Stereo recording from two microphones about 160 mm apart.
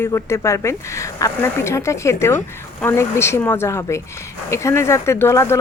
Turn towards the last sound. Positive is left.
turn(degrees=15)  # may be behind; listen again after turning